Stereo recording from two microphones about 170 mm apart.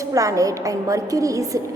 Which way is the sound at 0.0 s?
20° right (ahead or behind).